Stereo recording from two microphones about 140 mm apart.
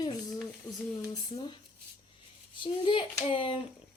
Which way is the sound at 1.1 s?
35° left (ahead or behind).